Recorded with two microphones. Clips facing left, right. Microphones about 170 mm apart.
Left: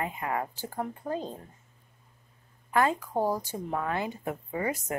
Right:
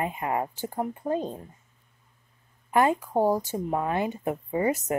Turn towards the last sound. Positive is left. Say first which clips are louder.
# right 6 dB
turn(degrees=-20)  # may be behind; listen again after turning